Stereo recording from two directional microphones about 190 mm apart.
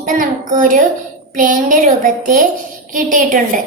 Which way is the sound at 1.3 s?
45° right (ahead or behind).